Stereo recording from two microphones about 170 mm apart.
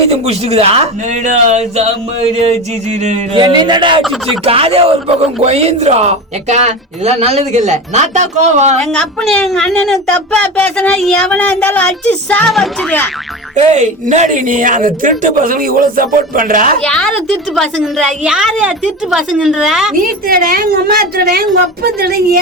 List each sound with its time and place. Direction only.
0.1 s speech: 35° right (ahead or behind)
3.3 s speech: 25° right (ahead or behind)
4.0 s speech: centre (ahead or behind)
4.4 s speech: 35° right (ahead or behind)
8.8 s speech: 5° left (ahead or behind)
13.6 s speech: 45° right (ahead or behind)
16.8 s speech: 5° left (ahead or behind)
20.0 s a woman's voice: 60° right (ahead or behind)